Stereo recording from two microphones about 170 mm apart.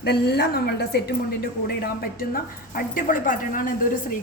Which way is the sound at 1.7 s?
65° left (ahead or behind).